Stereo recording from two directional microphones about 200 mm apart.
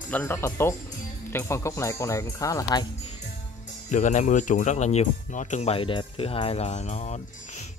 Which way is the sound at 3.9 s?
35° left (ahead or behind).